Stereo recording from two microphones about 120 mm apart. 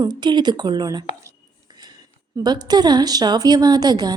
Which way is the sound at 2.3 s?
35° right (ahead or behind).